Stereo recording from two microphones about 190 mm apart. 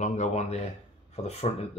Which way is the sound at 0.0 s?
40° left (ahead or behind).